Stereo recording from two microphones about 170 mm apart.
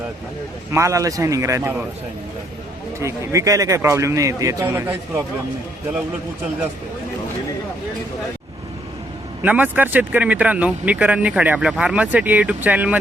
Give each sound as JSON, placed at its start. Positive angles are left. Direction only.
{"t": 0.7, "sound": "speech", "side_deg": -15}
{"t": 3.0, "sound": "speech", "side_deg": -15}
{"t": 9.4, "sound": "speech", "side_deg": -10}